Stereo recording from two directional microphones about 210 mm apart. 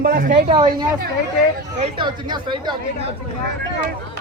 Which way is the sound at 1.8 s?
25° right (ahead or behind).